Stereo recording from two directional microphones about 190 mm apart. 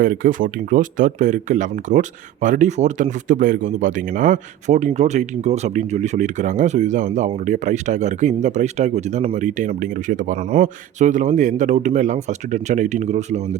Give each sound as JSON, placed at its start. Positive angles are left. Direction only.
{"t": 0.0, "sound": "speech", "side_deg": -45}